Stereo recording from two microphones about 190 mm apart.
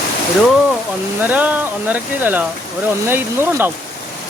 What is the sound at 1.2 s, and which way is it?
Speech, 10° right (ahead or behind).